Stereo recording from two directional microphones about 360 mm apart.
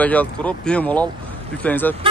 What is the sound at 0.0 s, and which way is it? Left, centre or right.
Speech, centre.